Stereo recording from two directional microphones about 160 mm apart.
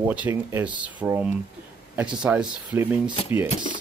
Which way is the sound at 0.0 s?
10° right (ahead or behind).